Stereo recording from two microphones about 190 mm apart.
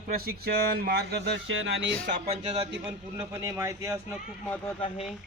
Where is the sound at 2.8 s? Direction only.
10° right (ahead or behind).